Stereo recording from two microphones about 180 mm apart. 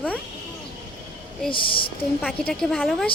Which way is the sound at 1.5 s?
30° left (ahead or behind).